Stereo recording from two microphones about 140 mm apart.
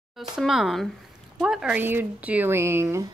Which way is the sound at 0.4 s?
Centre (ahead or behind).